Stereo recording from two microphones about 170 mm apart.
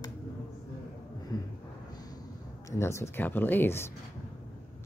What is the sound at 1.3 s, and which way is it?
Vehicle, 20° left (ahead or behind).